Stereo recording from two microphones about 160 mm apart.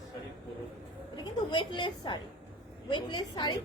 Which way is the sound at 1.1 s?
30° left (ahead or behind).